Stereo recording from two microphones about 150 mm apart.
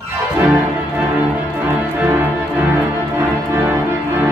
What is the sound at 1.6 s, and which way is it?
Music, 10° right (ahead or behind).